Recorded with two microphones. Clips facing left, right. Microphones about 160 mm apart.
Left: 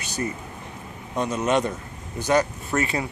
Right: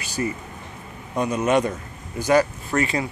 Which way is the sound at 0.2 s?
5° right (ahead or behind).